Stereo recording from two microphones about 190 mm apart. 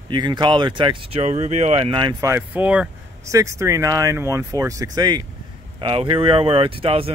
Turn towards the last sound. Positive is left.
turn(degrees=-30)  # may be behind; listen again after turning